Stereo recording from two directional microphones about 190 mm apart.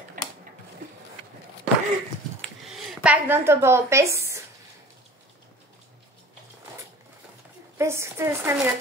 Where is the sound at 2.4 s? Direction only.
5° right (ahead or behind).